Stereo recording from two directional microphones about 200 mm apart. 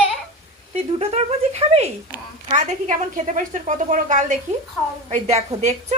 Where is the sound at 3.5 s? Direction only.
40° right (ahead or behind).